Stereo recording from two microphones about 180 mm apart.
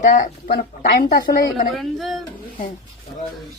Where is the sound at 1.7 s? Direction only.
Centre (ahead or behind).